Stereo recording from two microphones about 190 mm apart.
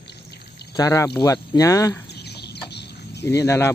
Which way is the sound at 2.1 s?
60° left (ahead or behind).